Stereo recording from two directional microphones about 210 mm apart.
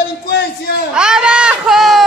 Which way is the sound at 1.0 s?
5° right (ahead or behind).